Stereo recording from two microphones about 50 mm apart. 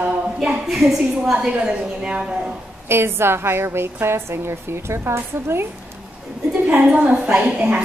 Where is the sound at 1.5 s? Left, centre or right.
Right.